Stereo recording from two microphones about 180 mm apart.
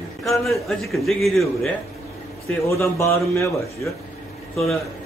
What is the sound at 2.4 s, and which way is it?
A man's voice, 15° left (ahead or behind).